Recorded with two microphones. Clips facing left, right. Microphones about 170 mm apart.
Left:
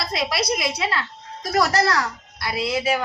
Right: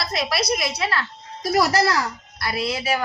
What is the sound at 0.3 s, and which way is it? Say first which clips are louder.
Speech: right 1 dB; 20° left (ahead or behind).